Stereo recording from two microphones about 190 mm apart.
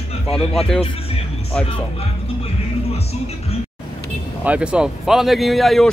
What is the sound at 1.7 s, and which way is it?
Music, 30° left (ahead or behind).